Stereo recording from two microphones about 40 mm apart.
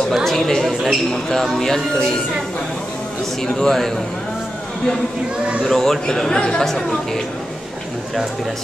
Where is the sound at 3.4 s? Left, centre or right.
Centre.